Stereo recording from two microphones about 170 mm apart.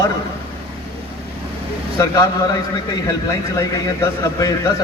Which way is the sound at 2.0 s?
20° left (ahead or behind).